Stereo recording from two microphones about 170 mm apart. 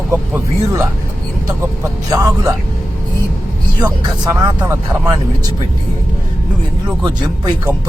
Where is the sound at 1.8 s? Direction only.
15° right (ahead or behind).